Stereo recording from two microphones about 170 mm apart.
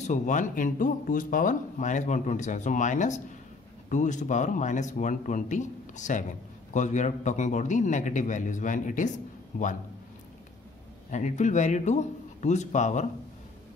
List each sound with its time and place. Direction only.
0.0 s speech: 45° left (ahead or behind)
11.1 s speech: 45° left (ahead or behind)